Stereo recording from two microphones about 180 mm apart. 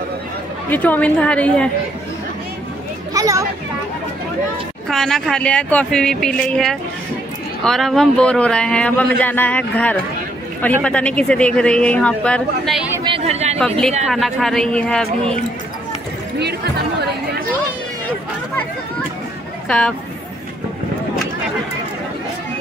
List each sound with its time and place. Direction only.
0.7 s speech: 10° left (ahead or behind)
3.1 s a sound: 20° right (ahead or behind)
4.8 s speech: centre (ahead or behind)
13.0 s chatter: 35° right (ahead or behind)
13.6 s speech: 5° left (ahead or behind)